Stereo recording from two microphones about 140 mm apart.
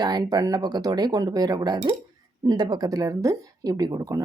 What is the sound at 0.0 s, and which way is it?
Speech, 30° right (ahead or behind).